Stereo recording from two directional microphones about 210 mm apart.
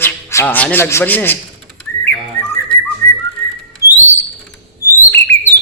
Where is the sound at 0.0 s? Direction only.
10° left (ahead or behind).